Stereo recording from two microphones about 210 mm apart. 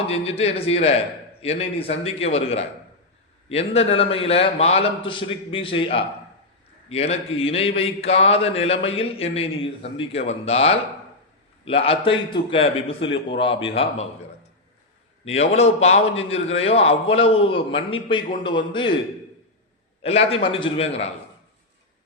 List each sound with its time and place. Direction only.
0.1 s a man's voice: 30° left (ahead or behind)
15.2 s a man's voice: 30° left (ahead or behind)
20.0 s a man's voice: 30° left (ahead or behind)